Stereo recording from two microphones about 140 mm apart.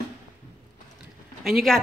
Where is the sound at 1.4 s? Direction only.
Centre (ahead or behind).